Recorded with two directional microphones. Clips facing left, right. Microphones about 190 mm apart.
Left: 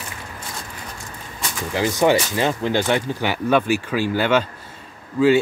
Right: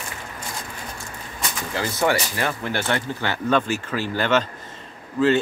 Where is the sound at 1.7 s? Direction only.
15° left (ahead or behind).